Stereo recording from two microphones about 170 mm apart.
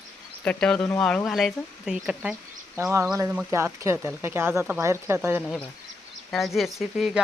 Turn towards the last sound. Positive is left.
turn(degrees=0)  # may be behind; listen again after turning